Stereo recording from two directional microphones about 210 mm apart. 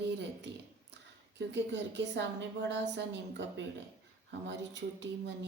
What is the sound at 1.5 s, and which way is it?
A woman's voice, 55° right (ahead or behind).